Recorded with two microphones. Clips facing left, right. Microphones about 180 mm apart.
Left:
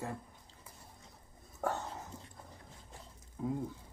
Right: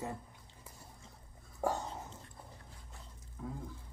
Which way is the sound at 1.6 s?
10° right (ahead or behind).